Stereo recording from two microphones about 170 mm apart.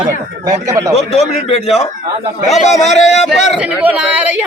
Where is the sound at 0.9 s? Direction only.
35° left (ahead or behind).